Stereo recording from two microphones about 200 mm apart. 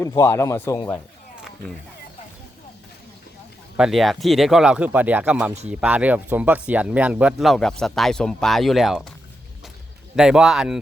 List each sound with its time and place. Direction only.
0.0 s speech: 15° left (ahead or behind)
3.8 s speech: centre (ahead or behind)
10.2 s speech: 5° right (ahead or behind)